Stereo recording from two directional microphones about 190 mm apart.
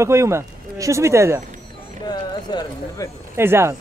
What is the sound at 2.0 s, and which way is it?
Speech, 20° left (ahead or behind).